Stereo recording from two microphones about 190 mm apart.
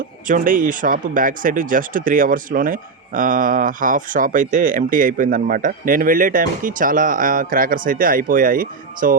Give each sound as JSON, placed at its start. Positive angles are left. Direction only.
{"t": 0.3, "sound": "speech", "side_deg": -45}